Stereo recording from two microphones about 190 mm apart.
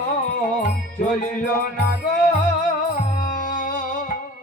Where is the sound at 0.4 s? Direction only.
40° left (ahead or behind).